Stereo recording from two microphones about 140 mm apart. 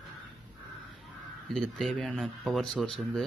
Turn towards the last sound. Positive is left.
turn(degrees=0)  # may be behind; listen again after turning